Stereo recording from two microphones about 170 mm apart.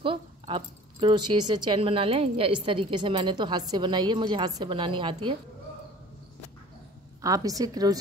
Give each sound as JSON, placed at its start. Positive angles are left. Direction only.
{"t": 0.0, "sound": "speech", "side_deg": -30}
{"t": 7.2, "sound": "speech", "side_deg": -20}